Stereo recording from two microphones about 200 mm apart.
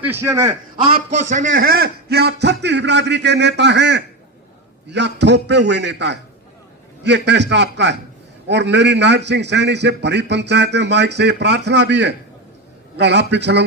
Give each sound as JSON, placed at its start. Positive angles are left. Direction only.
{"t": 0.0, "sound": "a man's voice", "side_deg": -10}